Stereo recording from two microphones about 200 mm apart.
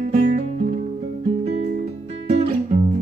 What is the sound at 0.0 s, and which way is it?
Guitar, 40° right (ahead or behind).